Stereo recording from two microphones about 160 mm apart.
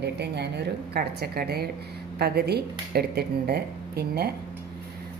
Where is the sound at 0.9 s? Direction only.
80° right.